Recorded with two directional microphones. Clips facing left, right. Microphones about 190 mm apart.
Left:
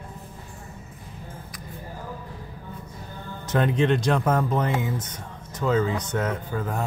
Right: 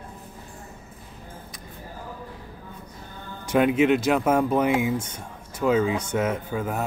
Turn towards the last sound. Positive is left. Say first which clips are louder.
# right 1 dB
turn(degrees=-10)  # may be behind; listen again after turning